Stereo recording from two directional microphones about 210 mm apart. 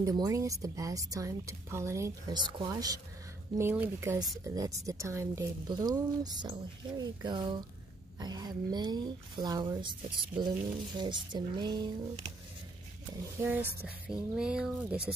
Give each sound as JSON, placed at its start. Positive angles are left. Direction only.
{"t": 0.0, "sound": "a woman's voice", "side_deg": -15}
{"t": 13.6, "sound": "speech", "side_deg": -50}
{"t": 14.0, "sound": "speech", "side_deg": -5}